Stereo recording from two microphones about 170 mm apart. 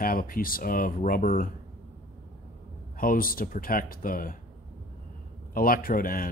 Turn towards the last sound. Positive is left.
turn(degrees=55)  # may be behind; listen again after turning